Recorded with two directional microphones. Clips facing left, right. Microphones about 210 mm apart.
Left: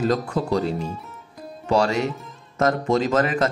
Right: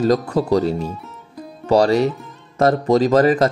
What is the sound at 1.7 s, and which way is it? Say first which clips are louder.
Speech: right 6 dB; 35° right (ahead or behind).